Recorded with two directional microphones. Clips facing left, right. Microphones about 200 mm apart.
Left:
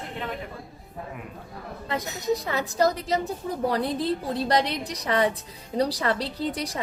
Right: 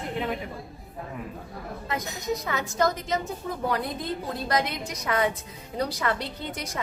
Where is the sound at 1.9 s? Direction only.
35° left (ahead or behind).